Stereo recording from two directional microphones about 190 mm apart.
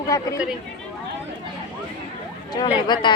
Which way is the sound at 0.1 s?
20° left (ahead or behind).